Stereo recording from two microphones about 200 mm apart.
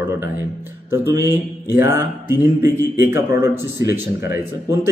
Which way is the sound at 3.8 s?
15° right (ahead or behind).